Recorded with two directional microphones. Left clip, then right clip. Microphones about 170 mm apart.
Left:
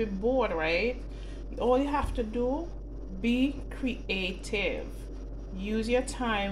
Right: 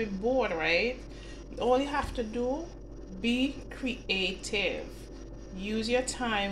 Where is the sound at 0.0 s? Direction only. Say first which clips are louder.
Left 1 dB; centre (ahead or behind).